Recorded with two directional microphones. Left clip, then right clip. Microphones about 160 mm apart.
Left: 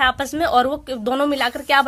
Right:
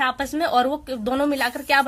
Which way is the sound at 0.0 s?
35° left (ahead or behind).